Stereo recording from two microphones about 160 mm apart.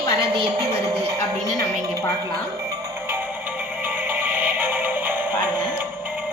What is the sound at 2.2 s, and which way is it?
Music, 20° right (ahead or behind).